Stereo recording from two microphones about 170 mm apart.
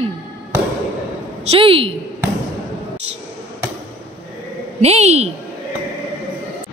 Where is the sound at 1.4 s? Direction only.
35° right (ahead or behind).